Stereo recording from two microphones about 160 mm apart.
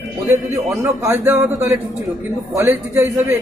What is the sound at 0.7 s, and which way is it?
Speech, 20° right (ahead or behind).